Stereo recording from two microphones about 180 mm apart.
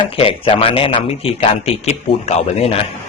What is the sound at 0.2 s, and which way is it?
A man's voice, 30° left (ahead or behind).